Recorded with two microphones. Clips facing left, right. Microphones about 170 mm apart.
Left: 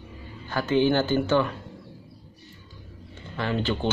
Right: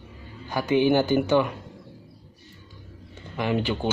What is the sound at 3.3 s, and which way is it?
Speech, 15° right (ahead or behind).